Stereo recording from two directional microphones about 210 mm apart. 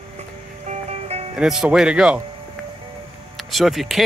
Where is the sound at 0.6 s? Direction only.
30° right (ahead or behind).